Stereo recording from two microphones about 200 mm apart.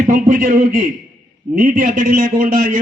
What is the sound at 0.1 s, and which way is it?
A man's voice, 40° right (ahead or behind).